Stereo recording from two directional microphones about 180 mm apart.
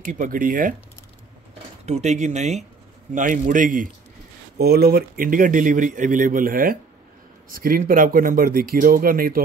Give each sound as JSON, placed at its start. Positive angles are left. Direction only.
{"t": 0.0, "sound": "speech", "side_deg": -45}
{"t": 1.9, "sound": "speech", "side_deg": -40}
{"t": 4.6, "sound": "speech", "side_deg": -60}